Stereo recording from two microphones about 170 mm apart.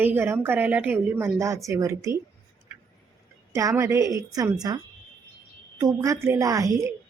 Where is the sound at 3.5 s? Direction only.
20° right (ahead or behind).